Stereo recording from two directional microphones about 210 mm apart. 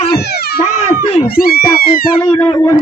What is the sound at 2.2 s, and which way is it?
Speech, 20° left (ahead or behind).